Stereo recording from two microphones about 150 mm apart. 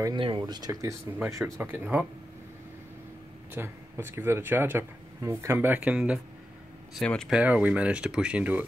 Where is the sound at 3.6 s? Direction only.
15° right (ahead or behind).